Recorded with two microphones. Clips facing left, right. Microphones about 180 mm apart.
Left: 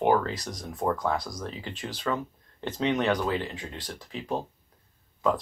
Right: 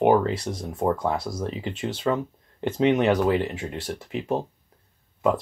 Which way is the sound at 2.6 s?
10° right (ahead or behind).